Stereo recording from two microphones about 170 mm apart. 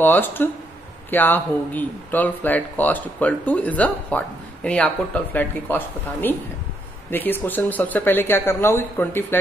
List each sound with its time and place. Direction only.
0.0 s speech: 10° left (ahead or behind)